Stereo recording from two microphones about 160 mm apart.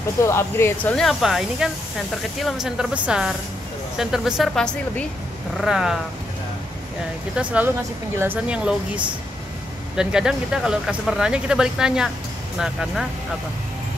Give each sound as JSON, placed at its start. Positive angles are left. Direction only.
{"t": 0.2, "sound": "speech", "side_deg": 15}
{"t": 0.9, "sound": "speech", "side_deg": 0}
{"t": 7.3, "sound": "speech", "side_deg": -10}